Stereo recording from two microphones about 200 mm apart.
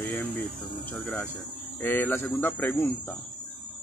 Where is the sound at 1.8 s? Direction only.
10° left (ahead or behind).